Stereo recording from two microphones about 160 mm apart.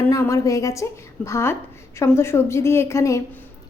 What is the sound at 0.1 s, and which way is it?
A woman's voice, 20° left (ahead or behind).